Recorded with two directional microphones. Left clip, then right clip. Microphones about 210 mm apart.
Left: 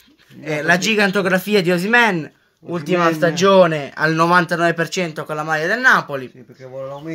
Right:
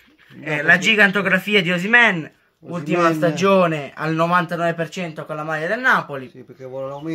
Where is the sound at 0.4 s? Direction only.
40° left (ahead or behind).